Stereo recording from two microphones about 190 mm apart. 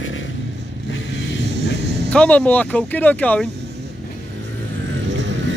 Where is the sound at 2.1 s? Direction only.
5° left (ahead or behind).